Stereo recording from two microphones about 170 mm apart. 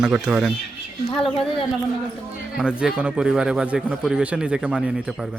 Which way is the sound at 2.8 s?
5° right (ahead or behind).